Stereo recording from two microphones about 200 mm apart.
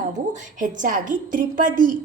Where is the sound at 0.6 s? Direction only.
40° right (ahead or behind).